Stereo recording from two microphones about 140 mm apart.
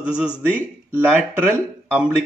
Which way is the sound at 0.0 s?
10° right (ahead or behind).